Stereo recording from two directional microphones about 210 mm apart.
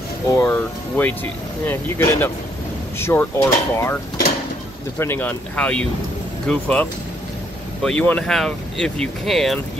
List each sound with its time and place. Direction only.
0.3 s speech: 15° left (ahead or behind)